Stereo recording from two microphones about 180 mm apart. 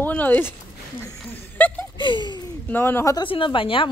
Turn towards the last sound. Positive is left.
turn(degrees=30)  # may be behind; listen again after turning